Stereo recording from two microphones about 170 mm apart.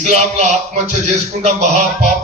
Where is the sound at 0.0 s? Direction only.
40° right (ahead or behind).